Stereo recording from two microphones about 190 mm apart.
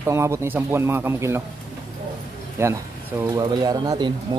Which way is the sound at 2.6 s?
15° right (ahead or behind).